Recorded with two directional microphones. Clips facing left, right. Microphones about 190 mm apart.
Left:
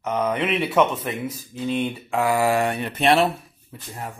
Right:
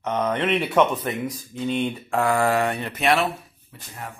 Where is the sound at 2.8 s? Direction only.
30° left (ahead or behind).